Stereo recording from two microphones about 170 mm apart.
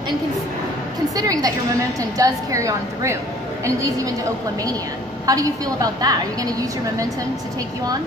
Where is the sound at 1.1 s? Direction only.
20° right (ahead or behind).